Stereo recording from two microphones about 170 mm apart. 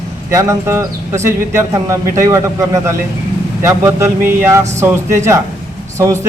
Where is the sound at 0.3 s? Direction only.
15° right (ahead or behind).